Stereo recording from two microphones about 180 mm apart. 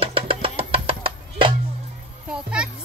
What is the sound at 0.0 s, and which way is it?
Music, 30° right (ahead or behind).